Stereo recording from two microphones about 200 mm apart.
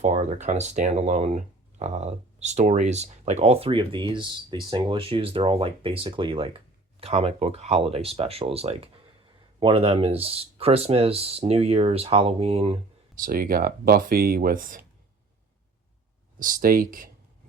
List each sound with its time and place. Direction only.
0.0 s speech: 35° right (ahead or behind)
13.1 s speech: 45° right (ahead or behind)
16.4 s speech: 45° right (ahead or behind)